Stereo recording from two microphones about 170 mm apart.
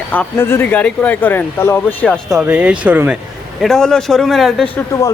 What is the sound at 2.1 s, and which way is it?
Speech, 5° right (ahead or behind).